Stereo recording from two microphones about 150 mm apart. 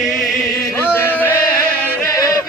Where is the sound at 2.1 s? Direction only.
20° left (ahead or behind).